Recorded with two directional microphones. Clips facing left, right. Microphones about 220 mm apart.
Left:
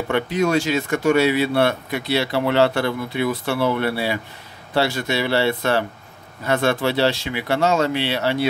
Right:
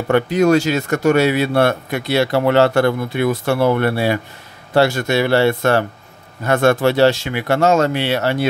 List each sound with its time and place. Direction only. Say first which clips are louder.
0.1 s speech: right 6 dB; 45° right (ahead or behind)